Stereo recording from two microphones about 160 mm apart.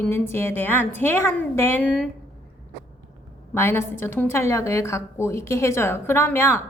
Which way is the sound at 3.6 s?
15° left (ahead or behind).